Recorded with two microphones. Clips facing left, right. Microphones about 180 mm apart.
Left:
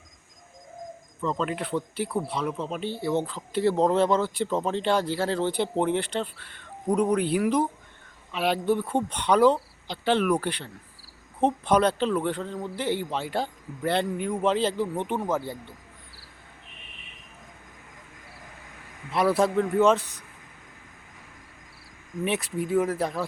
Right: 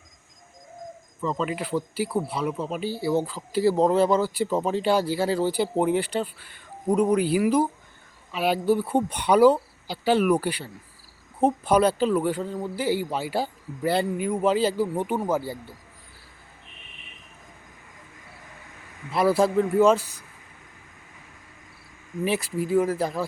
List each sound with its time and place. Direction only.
1.2 s a man's voice: centre (ahead or behind)
19.1 s speech: centre (ahead or behind)
20.0 s speech: 30° right (ahead or behind)
22.2 s speech: centre (ahead or behind)